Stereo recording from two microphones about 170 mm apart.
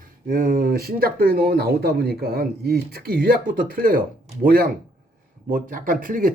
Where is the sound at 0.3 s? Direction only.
55° right (ahead or behind).